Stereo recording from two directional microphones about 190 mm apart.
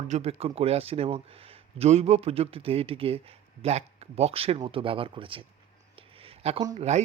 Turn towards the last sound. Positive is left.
turn(degrees=-35)  # may be behind; listen again after turning